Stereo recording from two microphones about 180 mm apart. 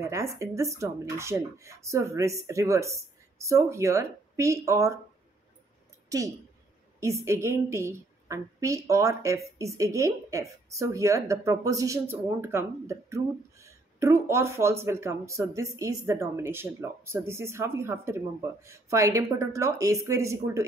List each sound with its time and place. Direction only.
0.0 s a woman's voice: 15° right (ahead or behind)
6.0 s a woman's voice: 20° right (ahead or behind)